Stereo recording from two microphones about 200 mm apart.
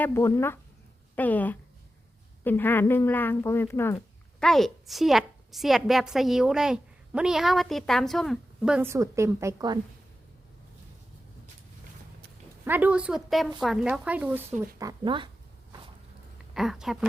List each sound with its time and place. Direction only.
0.0 s speech: 15° left (ahead or behind); by 9.7 s 15° right (ahead or behind)
12.6 s speech: 10° right (ahead or behind)
14.8 s speech: 20° right (ahead or behind)
16.6 s speech: centre (ahead or behind)